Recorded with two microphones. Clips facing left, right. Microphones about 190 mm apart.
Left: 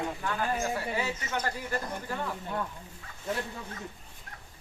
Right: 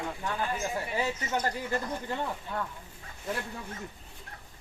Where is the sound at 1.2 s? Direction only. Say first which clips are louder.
Right 2 dB; 20° right (ahead or behind).